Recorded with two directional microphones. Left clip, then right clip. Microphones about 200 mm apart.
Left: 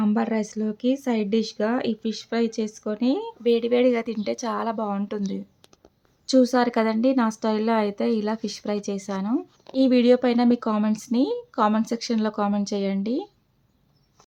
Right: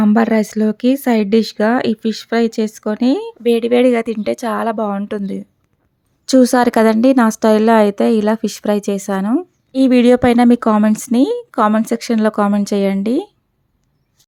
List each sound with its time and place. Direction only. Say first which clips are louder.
0.0 s speech: right 11 dB; 40° right (ahead or behind)
6.2 s a woman's voice: right 8 dB; 45° right (ahead or behind)